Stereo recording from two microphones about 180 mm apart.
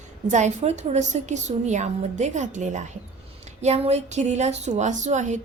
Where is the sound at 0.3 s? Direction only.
40° right (ahead or behind).